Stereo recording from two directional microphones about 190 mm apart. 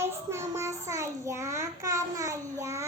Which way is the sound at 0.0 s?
15° right (ahead or behind).